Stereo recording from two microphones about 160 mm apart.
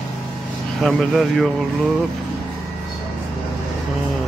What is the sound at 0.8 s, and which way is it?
Speech, centre (ahead or behind).